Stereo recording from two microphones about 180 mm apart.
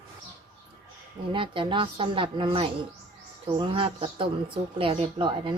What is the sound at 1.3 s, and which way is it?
Speech, 30° right (ahead or behind).